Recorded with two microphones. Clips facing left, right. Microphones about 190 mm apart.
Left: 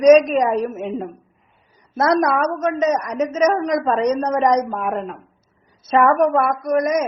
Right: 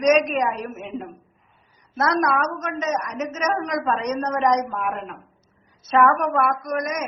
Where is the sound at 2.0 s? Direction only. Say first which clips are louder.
Left 4 dB; 35° left (ahead or behind).